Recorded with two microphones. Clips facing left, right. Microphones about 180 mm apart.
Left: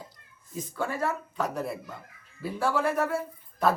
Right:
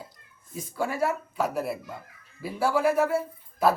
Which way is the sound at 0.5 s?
10° right (ahead or behind).